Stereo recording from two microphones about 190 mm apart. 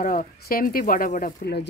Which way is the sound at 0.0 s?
45° left (ahead or behind).